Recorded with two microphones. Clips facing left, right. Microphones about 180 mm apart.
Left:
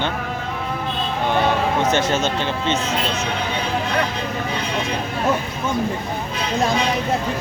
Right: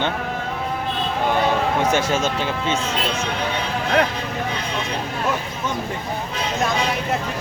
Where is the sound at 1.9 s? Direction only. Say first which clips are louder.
Left 1 dB; 10° right (ahead or behind).